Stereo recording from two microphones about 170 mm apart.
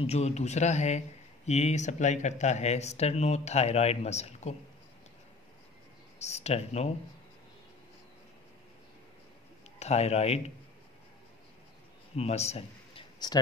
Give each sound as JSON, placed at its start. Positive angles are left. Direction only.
{"t": 0.0, "sound": "speech", "side_deg": 40}
{"t": 6.1, "sound": "speech", "side_deg": 40}
{"t": 9.8, "sound": "speech", "side_deg": 40}
{"t": 12.2, "sound": "a man's voice", "side_deg": 40}